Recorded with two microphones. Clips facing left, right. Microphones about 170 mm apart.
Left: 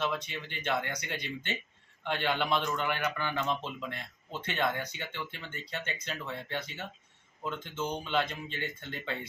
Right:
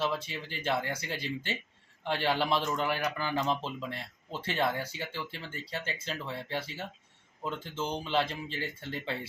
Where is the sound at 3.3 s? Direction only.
35° right (ahead or behind).